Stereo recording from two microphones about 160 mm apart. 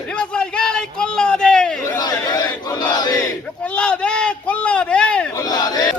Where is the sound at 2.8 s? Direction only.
25° left (ahead or behind).